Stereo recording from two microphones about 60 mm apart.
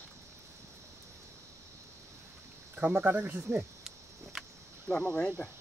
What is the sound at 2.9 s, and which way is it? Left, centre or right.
Speech, right.